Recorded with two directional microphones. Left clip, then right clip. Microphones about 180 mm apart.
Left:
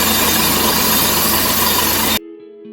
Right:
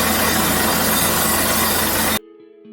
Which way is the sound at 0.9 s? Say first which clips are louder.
Left 2 dB; 15° right (ahead or behind).